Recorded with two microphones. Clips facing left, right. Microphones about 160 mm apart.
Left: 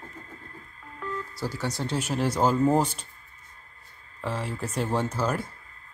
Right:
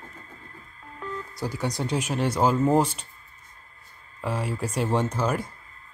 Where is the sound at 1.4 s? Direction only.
15° right (ahead or behind).